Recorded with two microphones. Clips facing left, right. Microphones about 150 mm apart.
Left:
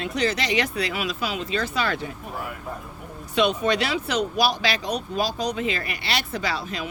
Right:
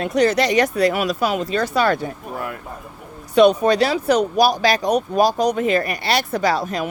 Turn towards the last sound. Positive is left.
turn(degrees=-45)  # may be behind; listen again after turning